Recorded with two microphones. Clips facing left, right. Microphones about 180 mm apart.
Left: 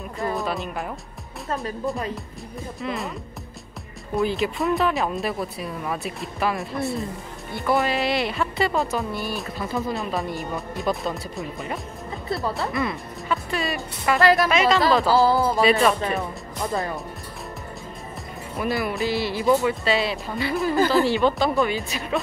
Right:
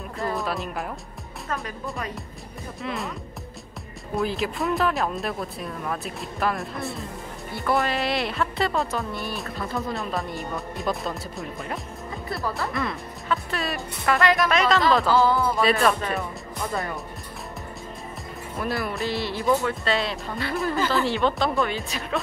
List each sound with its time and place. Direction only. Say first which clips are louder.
0.4 s speech: left 1 dB; centre (ahead or behind)
2.8 s speech: left 1 dB; centre (ahead or behind)
14.2 s speech: left 4 dB; 35° left (ahead or behind)
14.5 s speech: left 2 dB; centre (ahead or behind)
15.0 s speech: left 2 dB; 35° left (ahead or behind)
15.6 s speech: left 2 dB; centre (ahead or behind)
18.6 s speech: left 3 dB; centre (ahead or behind)